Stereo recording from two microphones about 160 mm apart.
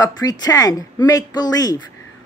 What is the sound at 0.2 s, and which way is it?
A man's voice, 25° left (ahead or behind).